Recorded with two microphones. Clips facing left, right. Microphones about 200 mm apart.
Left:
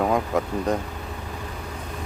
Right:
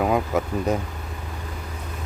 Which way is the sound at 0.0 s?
5° right (ahead or behind).